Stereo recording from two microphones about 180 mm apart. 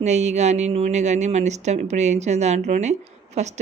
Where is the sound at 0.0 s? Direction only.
40° right (ahead or behind).